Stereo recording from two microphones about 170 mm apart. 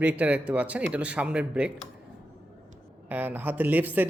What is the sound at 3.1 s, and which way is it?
Speech, 10° right (ahead or behind).